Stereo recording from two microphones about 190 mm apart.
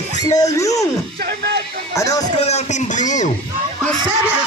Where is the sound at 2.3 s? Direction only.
35° left (ahead or behind).